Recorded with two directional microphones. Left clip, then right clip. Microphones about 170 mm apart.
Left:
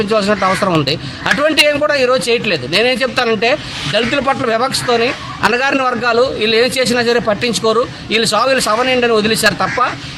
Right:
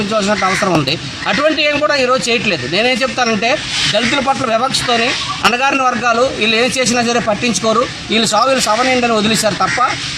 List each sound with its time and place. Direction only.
0.1 s a man's voice: 15° left (ahead or behind)